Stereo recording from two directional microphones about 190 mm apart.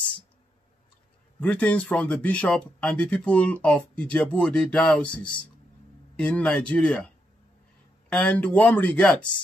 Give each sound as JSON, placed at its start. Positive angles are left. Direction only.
{"t": 1.4, "sound": "speech", "side_deg": 5}
{"t": 6.1, "sound": "speech", "side_deg": 5}
{"t": 8.1, "sound": "speech", "side_deg": 5}